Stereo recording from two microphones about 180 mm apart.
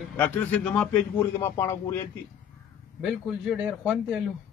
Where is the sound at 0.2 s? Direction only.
5° left (ahead or behind).